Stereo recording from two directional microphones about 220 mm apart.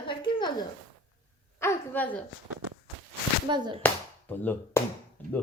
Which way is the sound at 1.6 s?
10° left (ahead or behind).